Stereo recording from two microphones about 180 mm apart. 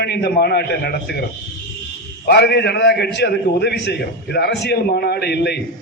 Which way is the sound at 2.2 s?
65° left (ahead or behind).